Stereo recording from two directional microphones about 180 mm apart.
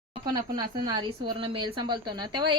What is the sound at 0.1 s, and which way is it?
A woman's voice, 25° right (ahead or behind).